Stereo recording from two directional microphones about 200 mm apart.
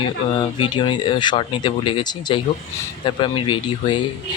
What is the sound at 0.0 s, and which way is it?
Speech, 25° left (ahead or behind).